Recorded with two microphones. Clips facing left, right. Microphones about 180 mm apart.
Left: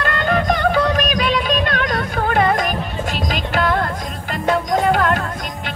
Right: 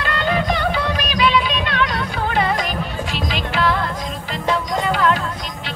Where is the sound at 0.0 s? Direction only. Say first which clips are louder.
Left 2 dB; 50° left (ahead or behind).